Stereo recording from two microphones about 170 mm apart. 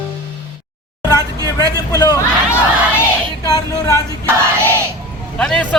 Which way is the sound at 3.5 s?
20° left (ahead or behind).